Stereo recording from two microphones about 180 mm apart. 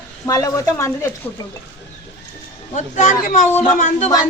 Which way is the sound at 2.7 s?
45° left (ahead or behind).